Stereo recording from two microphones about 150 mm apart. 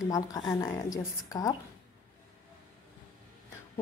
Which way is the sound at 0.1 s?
25° left (ahead or behind).